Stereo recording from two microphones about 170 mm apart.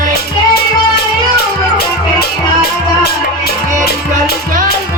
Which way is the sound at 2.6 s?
70° left (ahead or behind).